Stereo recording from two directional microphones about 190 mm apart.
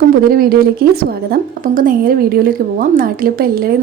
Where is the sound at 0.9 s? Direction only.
50° right (ahead or behind).